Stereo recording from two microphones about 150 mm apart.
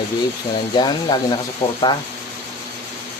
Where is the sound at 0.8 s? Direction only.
30° left (ahead or behind).